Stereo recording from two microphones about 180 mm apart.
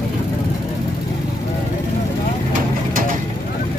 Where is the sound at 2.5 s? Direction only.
50° right (ahead or behind).